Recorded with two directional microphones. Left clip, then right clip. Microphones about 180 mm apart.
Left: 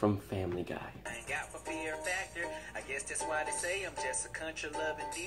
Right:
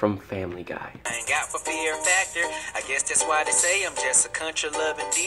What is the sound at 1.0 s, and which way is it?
Music, 30° right (ahead or behind).